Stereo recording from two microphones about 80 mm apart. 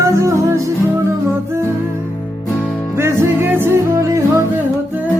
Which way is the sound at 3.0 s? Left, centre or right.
Right.